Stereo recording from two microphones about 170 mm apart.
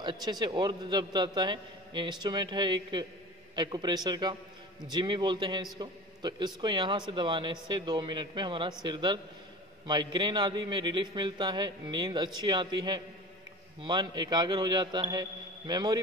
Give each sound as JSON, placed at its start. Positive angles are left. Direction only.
{"t": 0.0, "sound": "a man's voice", "side_deg": -25}